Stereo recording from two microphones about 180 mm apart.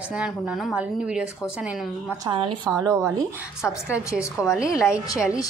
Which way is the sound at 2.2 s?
25° right (ahead or behind).